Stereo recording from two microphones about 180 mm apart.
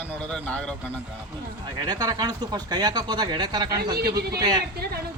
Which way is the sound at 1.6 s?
20° right (ahead or behind).